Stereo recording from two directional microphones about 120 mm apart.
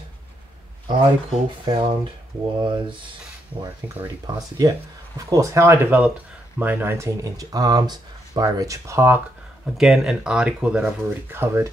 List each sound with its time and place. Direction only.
0.8 s speech: 40° right (ahead or behind)
4.4 s speech: 30° right (ahead or behind)
9.8 s speech: 5° right (ahead or behind); by 11.7 s 20° right (ahead or behind)